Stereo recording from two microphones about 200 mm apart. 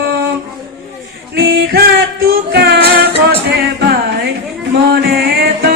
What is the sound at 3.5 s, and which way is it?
Music, 50° right (ahead or behind).